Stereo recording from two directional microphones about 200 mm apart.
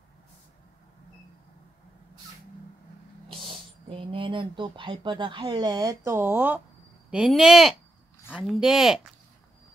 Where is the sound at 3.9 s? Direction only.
25° right (ahead or behind); by 9.0 s centre (ahead or behind).